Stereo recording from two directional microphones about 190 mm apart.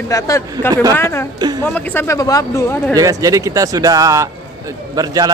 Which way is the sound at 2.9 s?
20° right (ahead or behind).